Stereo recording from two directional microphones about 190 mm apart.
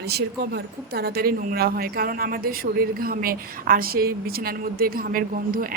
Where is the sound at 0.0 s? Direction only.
60° right (ahead or behind).